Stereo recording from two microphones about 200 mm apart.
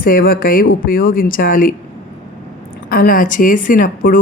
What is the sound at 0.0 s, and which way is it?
Speech, 45° left (ahead or behind).